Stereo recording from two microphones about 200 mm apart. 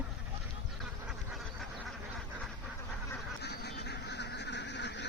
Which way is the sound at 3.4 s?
55° left (ahead or behind).